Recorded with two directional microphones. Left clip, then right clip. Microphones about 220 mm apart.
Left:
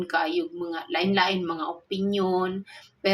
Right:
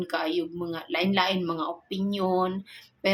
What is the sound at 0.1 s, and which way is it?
A woman's voice, 15° right (ahead or behind).